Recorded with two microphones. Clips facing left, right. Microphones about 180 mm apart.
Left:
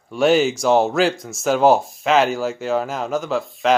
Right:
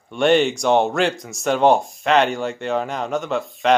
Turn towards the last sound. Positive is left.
turn(degrees=0)  # may be behind; listen again after turning